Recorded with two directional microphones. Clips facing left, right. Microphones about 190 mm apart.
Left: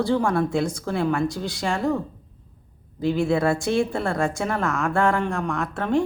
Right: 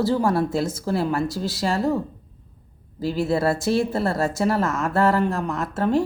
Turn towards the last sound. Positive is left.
turn(degrees=-5)  # may be behind; listen again after turning